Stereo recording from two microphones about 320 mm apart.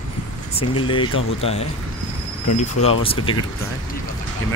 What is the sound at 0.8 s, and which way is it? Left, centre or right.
Speech, centre.